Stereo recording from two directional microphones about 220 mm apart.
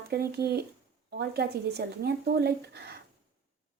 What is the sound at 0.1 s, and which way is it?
Speech, 45° right (ahead or behind).